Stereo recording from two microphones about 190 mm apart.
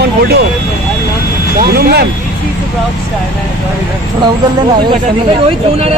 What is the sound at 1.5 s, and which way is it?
Speech, 55° right (ahead or behind).